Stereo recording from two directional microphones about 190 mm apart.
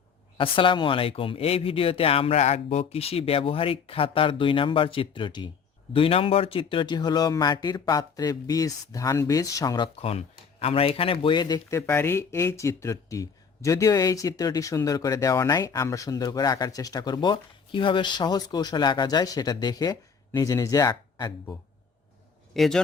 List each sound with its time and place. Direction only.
0.3 s speech: 25° left (ahead or behind)
22.5 s speech: centre (ahead or behind)